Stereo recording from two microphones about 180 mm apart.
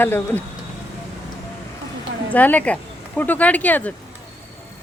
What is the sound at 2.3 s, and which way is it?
Speech, 10° left (ahead or behind).